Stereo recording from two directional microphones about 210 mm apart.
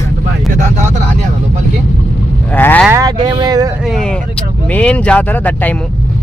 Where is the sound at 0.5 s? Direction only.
35° right (ahead or behind).